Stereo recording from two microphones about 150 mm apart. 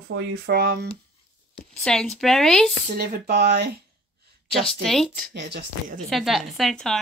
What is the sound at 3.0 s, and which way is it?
Speech, 90° right.